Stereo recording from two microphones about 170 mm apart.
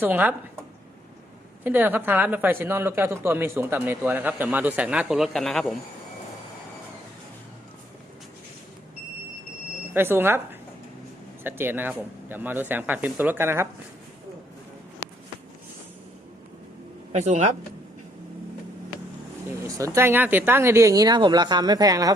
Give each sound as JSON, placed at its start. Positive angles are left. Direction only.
{"t": 0.0, "sound": "speech", "side_deg": -10}
{"t": 1.6, "sound": "speech", "side_deg": -10}
{"t": 9.9, "sound": "speech", "side_deg": -15}
{"t": 17.1, "sound": "speech", "side_deg": -40}
{"t": 19.5, "sound": "speech", "side_deg": -20}